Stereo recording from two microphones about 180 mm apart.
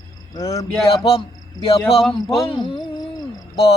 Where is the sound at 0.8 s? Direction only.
30° left (ahead or behind).